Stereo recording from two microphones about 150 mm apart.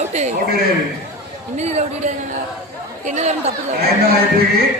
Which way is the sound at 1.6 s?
45° right (ahead or behind).